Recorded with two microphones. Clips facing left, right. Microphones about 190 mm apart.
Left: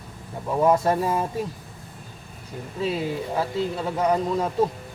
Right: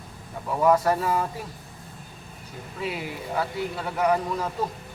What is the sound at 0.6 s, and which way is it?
Speech, 25° left (ahead or behind).